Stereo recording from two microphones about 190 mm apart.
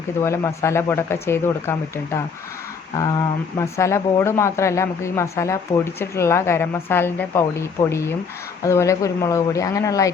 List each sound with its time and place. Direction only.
0.2 s speech: 15° left (ahead or behind)
2.9 s speech: 20° left (ahead or behind)